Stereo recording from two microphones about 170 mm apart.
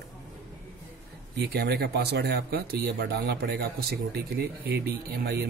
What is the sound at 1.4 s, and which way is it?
Speech, 75° right (ahead or behind).